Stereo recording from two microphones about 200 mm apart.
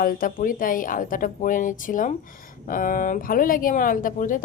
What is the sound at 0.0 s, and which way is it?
Speech, 45° left (ahead or behind).